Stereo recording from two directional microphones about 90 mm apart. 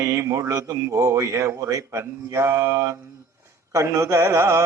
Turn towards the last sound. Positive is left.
turn(degrees=-25)  # may be behind; listen again after turning